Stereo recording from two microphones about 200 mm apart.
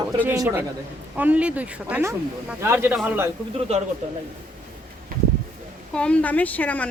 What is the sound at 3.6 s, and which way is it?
Speech, 30° right (ahead or behind).